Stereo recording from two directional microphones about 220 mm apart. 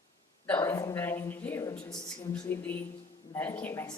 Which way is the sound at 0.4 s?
10° left (ahead or behind).